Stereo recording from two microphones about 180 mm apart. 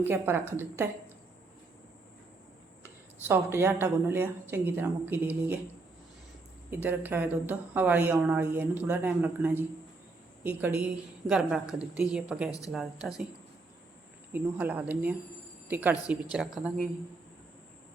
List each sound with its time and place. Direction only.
0.0 s a woman's voice: 10° right (ahead or behind)
3.2 s a woman's voice: 10° right (ahead or behind)
6.7 s a woman's voice: 10° right (ahead or behind)
14.3 s a woman's voice: 10° right (ahead or behind)